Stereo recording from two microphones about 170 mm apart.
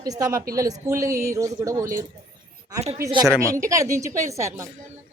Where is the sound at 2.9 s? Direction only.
20° right (ahead or behind).